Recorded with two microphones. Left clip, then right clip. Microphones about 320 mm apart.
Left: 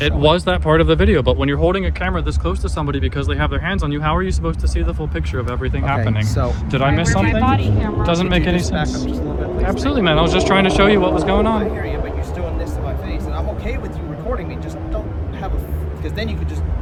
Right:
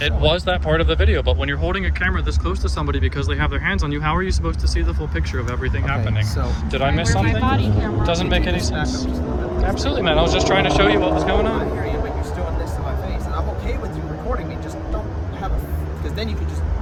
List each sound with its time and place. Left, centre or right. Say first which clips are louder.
0.0 s speech: left 4 dB; centre